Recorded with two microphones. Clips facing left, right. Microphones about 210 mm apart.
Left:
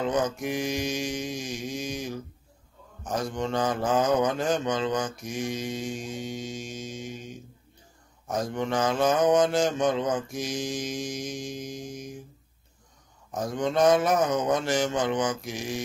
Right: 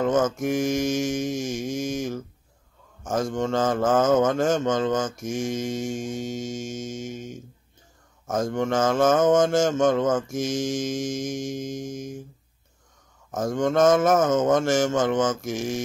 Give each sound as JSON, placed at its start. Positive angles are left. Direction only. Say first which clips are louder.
{"t": 0.0, "sound": "mantra", "louder": "right 5 dB", "side_deg": -45}
{"t": 13.3, "sound": "mantra", "louder": "right 4 dB", "side_deg": -45}